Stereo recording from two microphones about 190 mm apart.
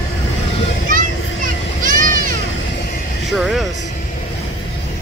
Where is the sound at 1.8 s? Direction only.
45° right (ahead or behind).